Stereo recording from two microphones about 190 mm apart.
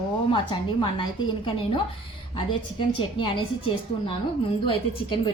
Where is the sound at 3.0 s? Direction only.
25° left (ahead or behind).